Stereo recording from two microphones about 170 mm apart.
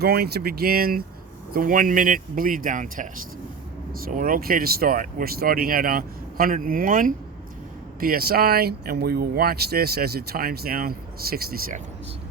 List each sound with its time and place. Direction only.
0.0 s speech: 65° right (ahead or behind)